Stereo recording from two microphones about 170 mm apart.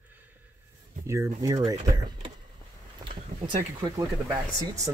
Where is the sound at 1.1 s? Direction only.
20° right (ahead or behind).